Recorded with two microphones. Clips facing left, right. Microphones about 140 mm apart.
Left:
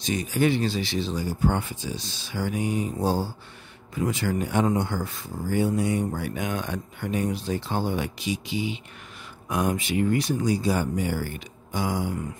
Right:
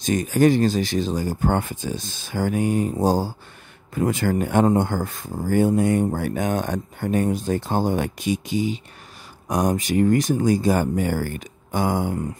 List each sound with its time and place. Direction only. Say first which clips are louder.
0.0 s speech: right 6 dB; 45° right (ahead or behind)